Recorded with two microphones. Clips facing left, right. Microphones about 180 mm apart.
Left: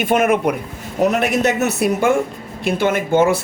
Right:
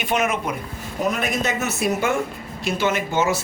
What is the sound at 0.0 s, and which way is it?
Speech, 50° left (ahead or behind).